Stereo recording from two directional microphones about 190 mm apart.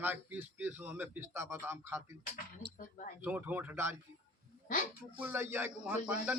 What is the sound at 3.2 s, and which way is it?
Speech, 10° right (ahead or behind).